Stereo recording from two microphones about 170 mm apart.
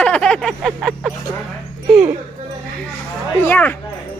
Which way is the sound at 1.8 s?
5° right (ahead or behind).